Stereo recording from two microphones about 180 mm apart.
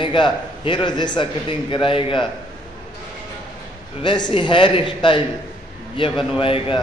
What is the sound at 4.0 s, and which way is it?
A man's voice, 25° left (ahead or behind).